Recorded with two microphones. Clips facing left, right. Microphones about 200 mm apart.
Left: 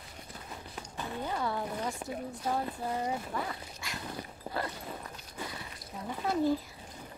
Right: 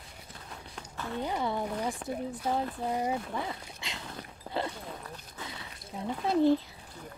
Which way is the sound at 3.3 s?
20° right (ahead or behind).